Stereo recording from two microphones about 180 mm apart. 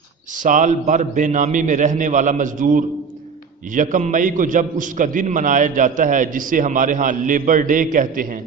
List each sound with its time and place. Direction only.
0.4 s a man's voice: 45° right (ahead or behind)